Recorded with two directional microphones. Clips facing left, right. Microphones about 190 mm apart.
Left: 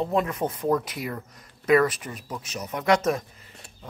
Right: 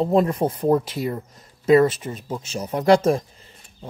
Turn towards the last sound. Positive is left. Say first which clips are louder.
# right 6 dB
turn(degrees=-30)  # may be behind; listen again after turning